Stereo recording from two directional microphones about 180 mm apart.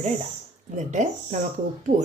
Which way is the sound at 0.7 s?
40° right (ahead or behind).